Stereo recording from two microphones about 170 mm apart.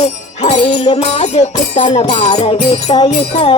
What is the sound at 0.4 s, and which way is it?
Music, 35° left (ahead or behind).